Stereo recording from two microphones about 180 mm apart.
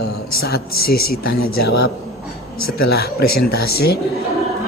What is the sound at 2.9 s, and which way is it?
Speech, 60° left (ahead or behind).